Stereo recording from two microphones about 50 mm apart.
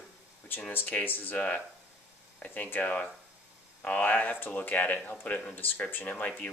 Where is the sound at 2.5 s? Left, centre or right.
Left.